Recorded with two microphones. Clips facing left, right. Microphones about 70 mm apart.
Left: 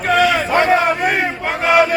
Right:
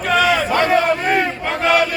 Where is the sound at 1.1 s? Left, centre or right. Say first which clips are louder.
Right 1 dB; centre.